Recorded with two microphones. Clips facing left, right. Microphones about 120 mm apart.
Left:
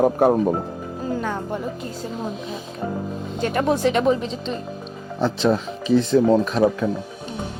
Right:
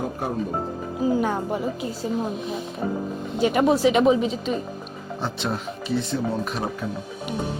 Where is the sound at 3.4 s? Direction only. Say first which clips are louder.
Right 2 dB; 5° right (ahead or behind).